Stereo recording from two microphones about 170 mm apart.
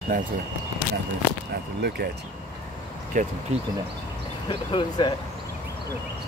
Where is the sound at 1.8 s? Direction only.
70° right (ahead or behind).